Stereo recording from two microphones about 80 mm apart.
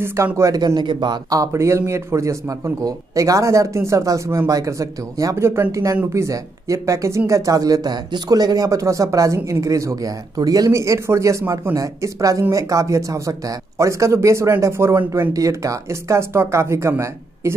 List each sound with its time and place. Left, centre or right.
0.0 s speech: right
0.5 s a man's voice: right
1.3 s speech: right
5.4 s speech: right
6.1 s speech: right
15.3 s speech: right